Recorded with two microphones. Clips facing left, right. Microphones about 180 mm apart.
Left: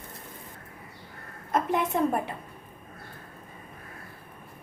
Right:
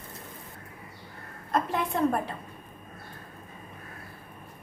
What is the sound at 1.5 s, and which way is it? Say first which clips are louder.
Speech: left 2 dB; 20° left (ahead or behind).